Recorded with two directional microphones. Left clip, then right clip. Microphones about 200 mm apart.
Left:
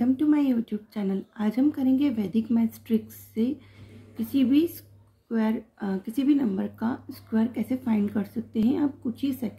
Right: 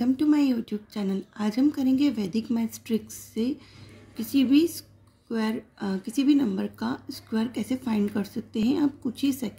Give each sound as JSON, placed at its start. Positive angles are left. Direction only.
{"t": 0.0, "sound": "speech", "side_deg": -15}